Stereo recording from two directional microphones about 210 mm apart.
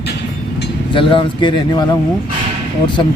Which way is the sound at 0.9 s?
25° left (ahead or behind).